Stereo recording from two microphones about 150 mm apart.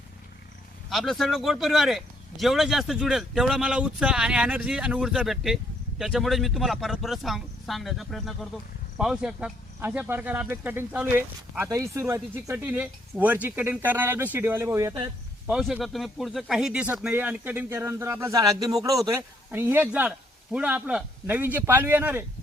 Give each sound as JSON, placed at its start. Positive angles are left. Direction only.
{"t": 0.9, "sound": "speech", "side_deg": 0}
{"t": 15.4, "sound": "speech", "side_deg": -5}